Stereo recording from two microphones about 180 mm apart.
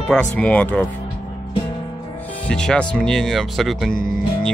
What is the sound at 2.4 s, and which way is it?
Speech, 5° left (ahead or behind).